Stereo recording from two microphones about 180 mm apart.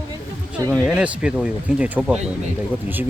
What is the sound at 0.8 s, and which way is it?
Speech, 5° right (ahead or behind).